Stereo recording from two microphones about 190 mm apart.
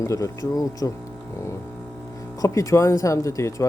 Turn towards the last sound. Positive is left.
turn(degrees=15)  # may be behind; listen again after turning